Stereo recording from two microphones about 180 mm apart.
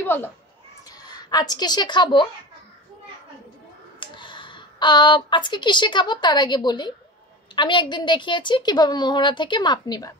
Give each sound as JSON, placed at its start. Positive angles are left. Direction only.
{"t": 0.0, "sound": "speech", "side_deg": 10}
{"t": 0.8, "sound": "speech", "side_deg": 20}
{"t": 4.0, "sound": "a woman's voice", "side_deg": 25}